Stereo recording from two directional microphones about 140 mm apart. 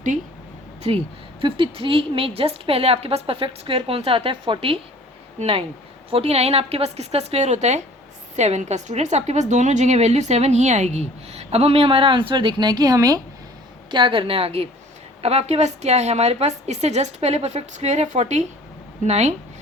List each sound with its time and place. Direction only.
0.8 s a woman's voice: 45° right (ahead or behind)